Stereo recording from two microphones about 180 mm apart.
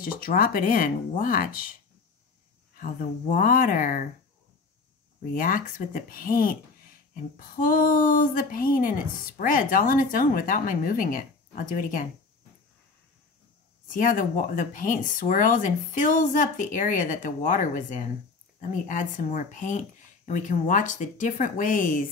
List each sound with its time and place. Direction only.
0.0 s speech: 50° left (ahead or behind)
2.8 s speech: 45° left (ahead or behind)
5.3 s speech: 50° left (ahead or behind)
13.8 s speech: 45° left (ahead or behind)